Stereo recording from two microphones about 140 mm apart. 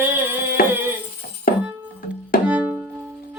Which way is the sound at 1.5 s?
90° left.